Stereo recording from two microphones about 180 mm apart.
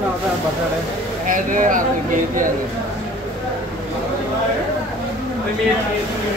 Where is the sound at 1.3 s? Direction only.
50° right (ahead or behind).